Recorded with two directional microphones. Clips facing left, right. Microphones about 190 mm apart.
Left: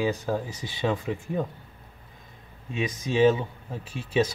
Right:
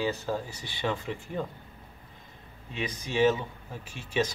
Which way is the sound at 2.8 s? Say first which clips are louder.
Left 4 dB; 20° left (ahead or behind).